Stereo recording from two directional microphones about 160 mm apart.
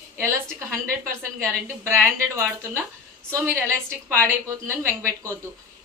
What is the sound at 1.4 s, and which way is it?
A woman's voice, 15° right (ahead or behind).